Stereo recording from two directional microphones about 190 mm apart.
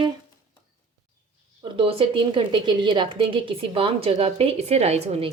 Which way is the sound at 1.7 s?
30° right (ahead or behind).